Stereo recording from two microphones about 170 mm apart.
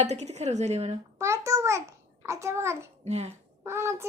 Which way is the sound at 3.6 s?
15° right (ahead or behind).